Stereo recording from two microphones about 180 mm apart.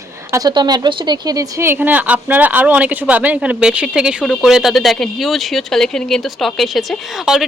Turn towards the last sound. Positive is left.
turn(degrees=0)  # may be behind; listen again after turning